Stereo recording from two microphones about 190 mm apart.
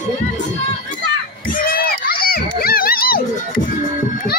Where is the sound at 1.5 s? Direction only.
50° left (ahead or behind).